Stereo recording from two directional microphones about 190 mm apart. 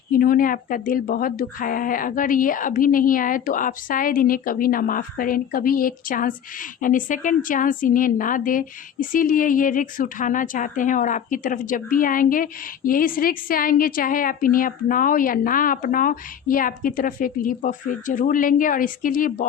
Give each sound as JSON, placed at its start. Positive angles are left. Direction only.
{"t": 0.1, "sound": "speech", "side_deg": 50}